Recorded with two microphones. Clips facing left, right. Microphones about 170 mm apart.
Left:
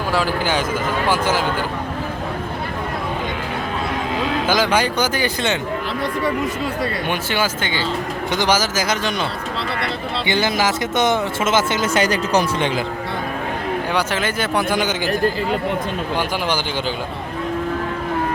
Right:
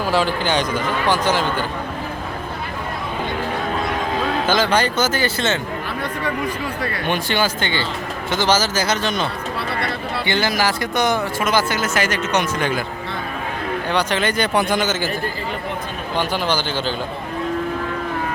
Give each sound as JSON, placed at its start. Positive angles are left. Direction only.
{"t": 0.1, "sound": "a man's voice", "side_deg": 5}
{"t": 4.4, "sound": "a man's voice", "side_deg": 10}
{"t": 7.1, "sound": "a man's voice", "side_deg": 10}
{"t": 10.2, "sound": "speech", "side_deg": 20}
{"t": 13.9, "sound": "a man's voice", "side_deg": 5}